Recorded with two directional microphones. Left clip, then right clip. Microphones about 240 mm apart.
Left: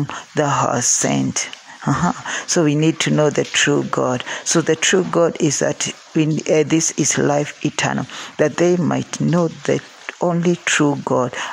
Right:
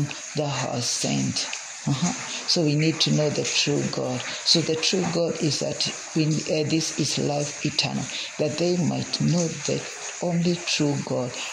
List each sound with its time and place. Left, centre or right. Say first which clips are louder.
0.4 s speech: left 10 dB; left
2.5 s speech: left 6 dB; left